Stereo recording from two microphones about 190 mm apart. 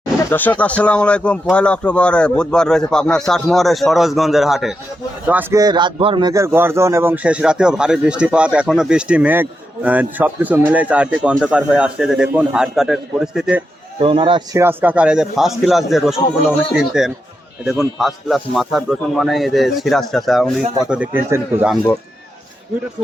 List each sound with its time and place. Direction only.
0.3 s a man's voice: 10° left (ahead or behind)
14.0 s a man's voice: 25° right (ahead or behind)
14.6 s speech: 10° right (ahead or behind)